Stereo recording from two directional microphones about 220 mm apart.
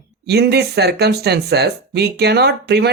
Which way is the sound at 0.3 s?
50° right (ahead or behind).